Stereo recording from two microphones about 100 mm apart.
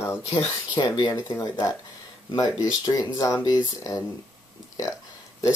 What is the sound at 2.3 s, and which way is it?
Speech, 35° left (ahead or behind).